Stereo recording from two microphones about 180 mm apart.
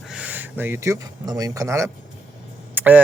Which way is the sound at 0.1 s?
10° right (ahead or behind).